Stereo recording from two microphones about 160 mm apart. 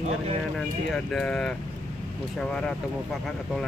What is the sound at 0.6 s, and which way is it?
Speech, 5° left (ahead or behind).